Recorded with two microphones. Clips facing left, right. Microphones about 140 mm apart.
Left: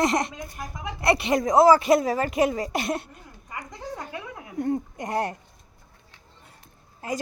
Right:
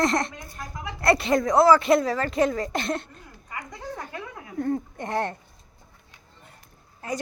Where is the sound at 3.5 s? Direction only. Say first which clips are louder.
Even; 15° left (ahead or behind).